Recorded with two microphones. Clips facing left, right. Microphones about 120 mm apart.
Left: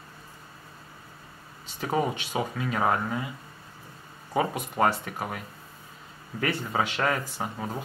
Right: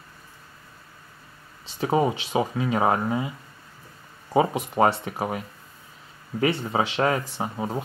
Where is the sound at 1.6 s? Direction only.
25° right (ahead or behind).